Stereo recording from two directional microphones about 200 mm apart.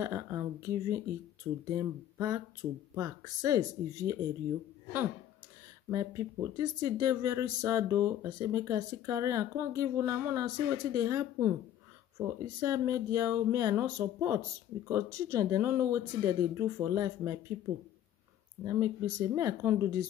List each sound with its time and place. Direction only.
0.0 s speech: 15° right (ahead or behind)
5.9 s speech: 15° right (ahead or behind)
12.5 s speech: 15° right (ahead or behind)
18.6 s speech: 15° right (ahead or behind)